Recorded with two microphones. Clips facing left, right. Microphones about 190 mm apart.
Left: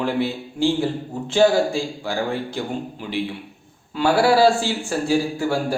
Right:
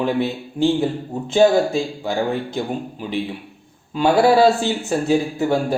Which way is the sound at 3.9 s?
20° right (ahead or behind).